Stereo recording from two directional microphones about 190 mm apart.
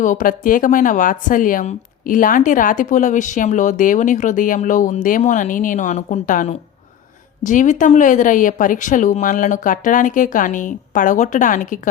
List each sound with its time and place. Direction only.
0.0 s speech: 45° left (ahead or behind)